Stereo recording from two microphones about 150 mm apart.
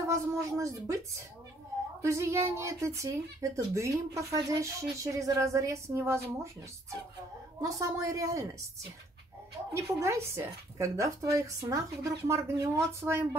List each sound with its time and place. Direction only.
0.1 s speech: 20° right (ahead or behind)
2.0 s speech: 20° right (ahead or behind)
7.6 s speech: 20° right (ahead or behind)
9.8 s speech: 20° right (ahead or behind)